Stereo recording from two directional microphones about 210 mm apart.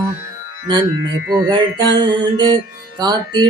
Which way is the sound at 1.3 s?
20° right (ahead or behind).